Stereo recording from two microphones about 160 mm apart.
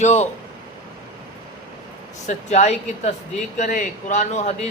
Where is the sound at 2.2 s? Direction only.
45° left (ahead or behind).